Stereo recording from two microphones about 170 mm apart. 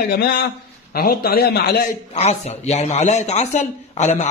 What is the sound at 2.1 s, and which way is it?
A man's voice, 40° left (ahead or behind).